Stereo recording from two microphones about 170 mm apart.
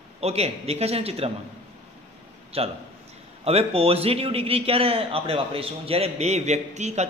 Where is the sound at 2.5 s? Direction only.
35° right (ahead or behind).